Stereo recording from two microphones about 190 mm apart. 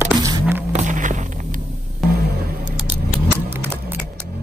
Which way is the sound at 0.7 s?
40° right (ahead or behind).